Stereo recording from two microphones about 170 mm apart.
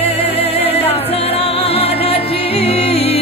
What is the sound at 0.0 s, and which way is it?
Music, 35° left (ahead or behind).